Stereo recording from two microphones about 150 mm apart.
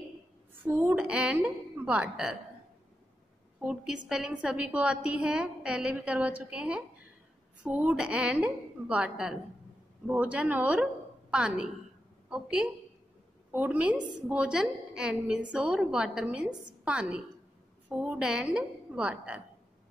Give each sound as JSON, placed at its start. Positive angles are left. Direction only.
{"t": 0.7, "sound": "a sound", "side_deg": -10}
{"t": 1.9, "sound": "a woman's voice", "side_deg": -5}
{"t": 3.6, "sound": "a woman's voice", "side_deg": -5}